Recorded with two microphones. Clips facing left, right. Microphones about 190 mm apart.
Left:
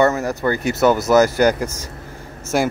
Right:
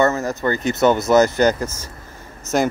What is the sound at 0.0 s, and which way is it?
Speech, 15° left (ahead or behind).